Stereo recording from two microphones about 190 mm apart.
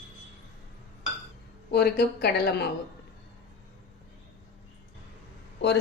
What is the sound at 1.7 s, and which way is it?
Speech, 55° left (ahead or behind).